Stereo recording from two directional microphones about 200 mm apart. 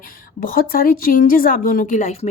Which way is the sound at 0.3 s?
45° left (ahead or behind).